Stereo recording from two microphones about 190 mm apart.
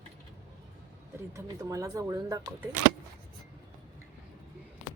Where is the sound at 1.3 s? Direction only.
15° right (ahead or behind).